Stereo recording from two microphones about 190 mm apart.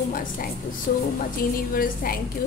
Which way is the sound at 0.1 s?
50° left (ahead or behind).